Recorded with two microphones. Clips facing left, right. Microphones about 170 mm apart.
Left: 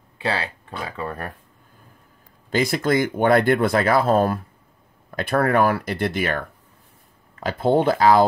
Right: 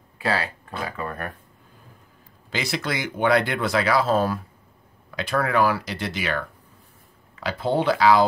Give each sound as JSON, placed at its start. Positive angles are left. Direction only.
{"t": 0.2, "sound": "speech", "side_deg": 25}
{"t": 2.5, "sound": "speech", "side_deg": 45}